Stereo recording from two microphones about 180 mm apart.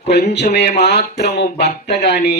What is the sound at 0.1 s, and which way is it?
A man's voice, 65° left (ahead or behind).